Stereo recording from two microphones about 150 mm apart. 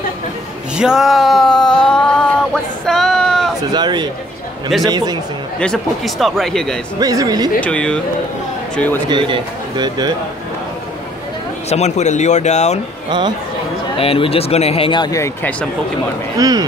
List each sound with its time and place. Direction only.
0.7 s a sound: 5° right (ahead or behind)
3.7 s speech: 30° right (ahead or behind)
5.6 s speech: 5° left (ahead or behind)
7.0 s speech: 25° right (ahead or behind)
7.6 s speech: 5° left (ahead or behind)
9.0 s speech: 30° right (ahead or behind)
11.7 s speech: 50° left (ahead or behind)
13.9 s speech: 40° left (ahead or behind); by 15.5 s 20° left (ahead or behind)
16.3 s speech: 25° right (ahead or behind)